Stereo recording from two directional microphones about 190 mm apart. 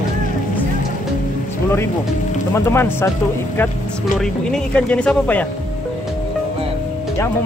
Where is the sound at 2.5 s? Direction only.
15° left (ahead or behind).